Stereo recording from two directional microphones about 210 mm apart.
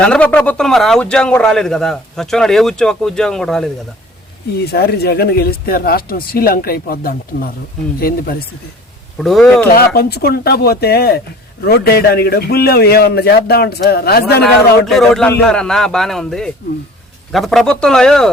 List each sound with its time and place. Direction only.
0.0 s a man's voice: 5° left (ahead or behind)
4.6 s speech: 50° left (ahead or behind)
9.1 s a man's voice: centre (ahead or behind)
9.7 s speech: 50° left (ahead or behind)
14.4 s a man's voice: centre (ahead or behind)